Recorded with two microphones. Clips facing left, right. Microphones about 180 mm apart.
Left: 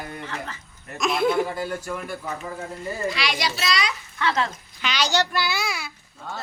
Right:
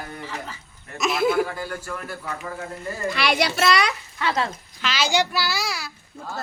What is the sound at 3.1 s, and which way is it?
Speech, 55° right (ahead or behind).